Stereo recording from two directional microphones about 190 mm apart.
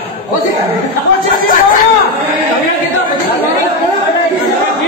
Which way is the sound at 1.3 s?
50° left (ahead or behind).